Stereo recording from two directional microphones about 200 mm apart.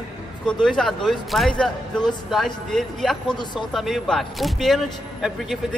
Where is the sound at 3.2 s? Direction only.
20° left (ahead or behind).